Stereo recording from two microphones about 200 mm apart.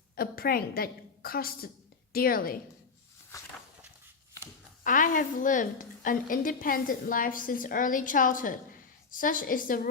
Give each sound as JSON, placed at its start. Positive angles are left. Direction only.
{"t": 0.2, "sound": "a woman's voice", "side_deg": 50}
{"t": 4.8, "sound": "a woman's voice", "side_deg": 40}